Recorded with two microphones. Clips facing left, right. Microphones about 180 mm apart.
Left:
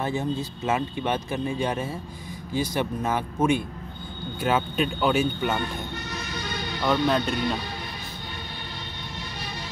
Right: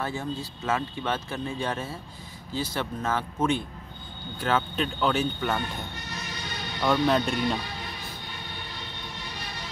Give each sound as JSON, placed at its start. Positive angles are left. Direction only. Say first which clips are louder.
{"t": 0.0, "sound": "speech", "louder": "left 4 dB", "side_deg": 20}
{"t": 6.8, "sound": "speech", "louder": "even", "side_deg": 0}